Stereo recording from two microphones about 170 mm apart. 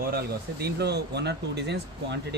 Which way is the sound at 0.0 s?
65° right (ahead or behind).